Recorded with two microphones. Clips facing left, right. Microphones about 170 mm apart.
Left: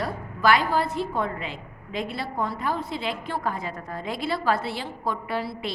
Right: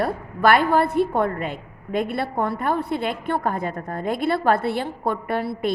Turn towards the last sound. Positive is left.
turn(degrees=-55)  # may be behind; listen again after turning